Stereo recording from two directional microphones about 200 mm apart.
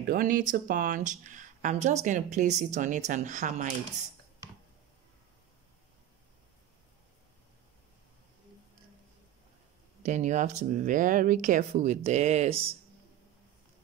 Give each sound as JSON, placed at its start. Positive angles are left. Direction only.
{"t": 0.1, "sound": "speech", "side_deg": -45}
{"t": 10.0, "sound": "speech", "side_deg": -35}